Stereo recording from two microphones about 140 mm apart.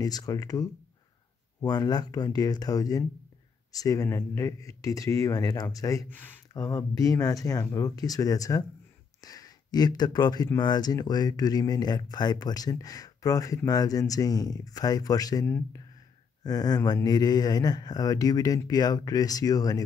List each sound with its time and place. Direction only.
0.0 s speech: 25° left (ahead or behind)
1.7 s speech: 30° left (ahead or behind)
6.0 s speech: 15° left (ahead or behind)
6.5 s speech: 25° left (ahead or behind)
16.4 s speech: 30° left (ahead or behind)